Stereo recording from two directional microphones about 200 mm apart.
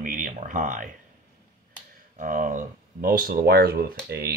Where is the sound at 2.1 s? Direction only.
40° right (ahead or behind).